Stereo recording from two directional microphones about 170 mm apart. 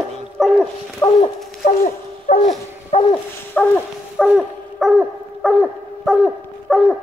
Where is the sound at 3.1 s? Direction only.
10° left (ahead or behind).